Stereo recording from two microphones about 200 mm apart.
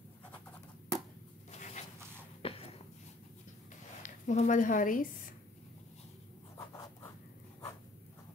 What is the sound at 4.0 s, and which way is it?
A woman's voice, 40° left (ahead or behind).